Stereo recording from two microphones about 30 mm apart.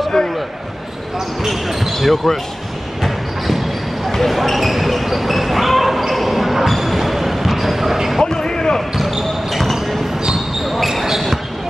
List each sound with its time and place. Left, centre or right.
1.4 s speech: centre
3.0 s basketball bounce: centre
8.2 s a sound: left
9.6 s basketball bounce: centre